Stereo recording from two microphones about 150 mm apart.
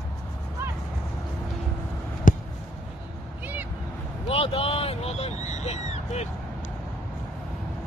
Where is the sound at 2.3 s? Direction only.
60° left (ahead or behind).